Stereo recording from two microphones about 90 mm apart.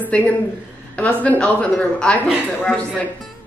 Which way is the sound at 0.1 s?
10° left (ahead or behind).